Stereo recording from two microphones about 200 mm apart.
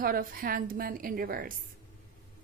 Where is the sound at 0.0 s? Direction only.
45° right (ahead or behind).